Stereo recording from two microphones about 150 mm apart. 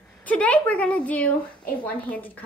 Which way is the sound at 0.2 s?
10° left (ahead or behind).